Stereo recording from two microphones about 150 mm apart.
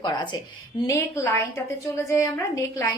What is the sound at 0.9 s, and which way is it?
A woman's voice, 15° left (ahead or behind).